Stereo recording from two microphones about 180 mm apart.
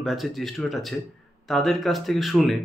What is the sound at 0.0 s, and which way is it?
Speech, centre (ahead or behind).